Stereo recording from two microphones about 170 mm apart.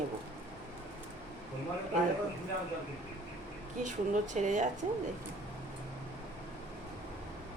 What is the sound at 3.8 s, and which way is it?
Speech, 45° right (ahead or behind).